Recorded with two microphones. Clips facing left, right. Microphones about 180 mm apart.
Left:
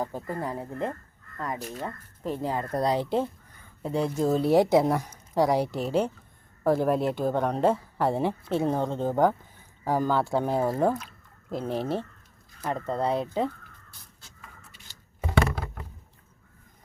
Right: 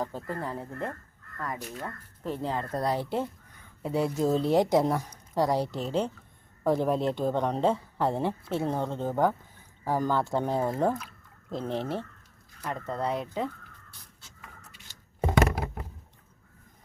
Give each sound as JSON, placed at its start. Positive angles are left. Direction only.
{"t": 0.0, "sound": "speech", "side_deg": 15}
{"t": 1.5, "sound": "speech", "side_deg": 35}
{"t": 1.8, "sound": "speech", "side_deg": 15}
{"t": 3.8, "sound": "speech", "side_deg": -5}
{"t": 12.6, "sound": "speech", "side_deg": 30}